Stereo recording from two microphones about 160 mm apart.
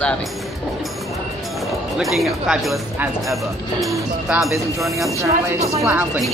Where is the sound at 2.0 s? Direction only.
Centre (ahead or behind).